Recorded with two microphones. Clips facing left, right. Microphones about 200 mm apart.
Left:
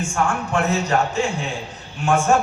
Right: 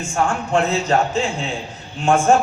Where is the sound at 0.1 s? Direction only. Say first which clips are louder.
Right 6 dB; 25° right (ahead or behind).